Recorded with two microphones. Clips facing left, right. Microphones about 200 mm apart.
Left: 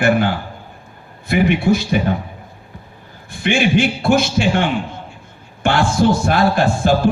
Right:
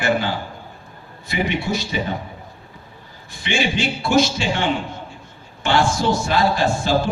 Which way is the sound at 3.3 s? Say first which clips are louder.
Left 7 dB; 55° left (ahead or behind).